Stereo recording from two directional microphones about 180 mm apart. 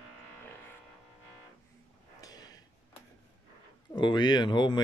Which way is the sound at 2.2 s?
20° left (ahead or behind).